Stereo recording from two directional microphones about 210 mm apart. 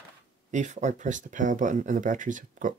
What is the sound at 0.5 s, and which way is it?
Speech, 35° right (ahead or behind).